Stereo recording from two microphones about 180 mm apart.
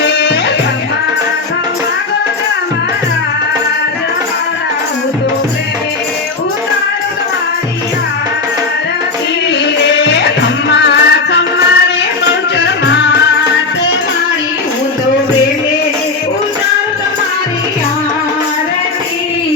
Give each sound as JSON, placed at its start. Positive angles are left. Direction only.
{"t": 0.0, "sound": "music", "side_deg": 70}
{"t": 9.8, "sound": "music", "side_deg": 70}